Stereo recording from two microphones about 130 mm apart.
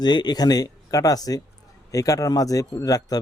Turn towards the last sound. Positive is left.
turn(degrees=30)  # may be behind; listen again after turning